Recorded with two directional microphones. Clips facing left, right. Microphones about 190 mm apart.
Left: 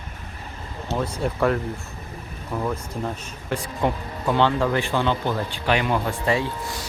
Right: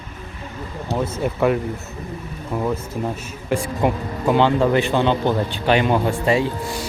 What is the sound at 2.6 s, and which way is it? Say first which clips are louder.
Speech: right 4 dB; 5° right (ahead or behind).